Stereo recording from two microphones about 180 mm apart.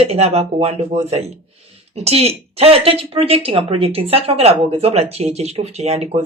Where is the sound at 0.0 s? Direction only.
35° right (ahead or behind).